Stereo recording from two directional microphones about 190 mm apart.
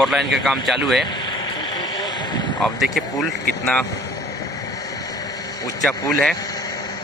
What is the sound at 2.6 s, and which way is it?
Speech, centre (ahead or behind).